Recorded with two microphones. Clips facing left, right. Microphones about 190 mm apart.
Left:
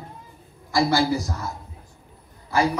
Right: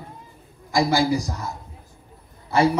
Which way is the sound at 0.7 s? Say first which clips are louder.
Right 1 dB; 15° right (ahead or behind).